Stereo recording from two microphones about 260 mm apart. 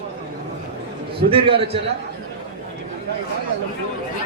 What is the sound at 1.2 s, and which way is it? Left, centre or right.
Speech, right.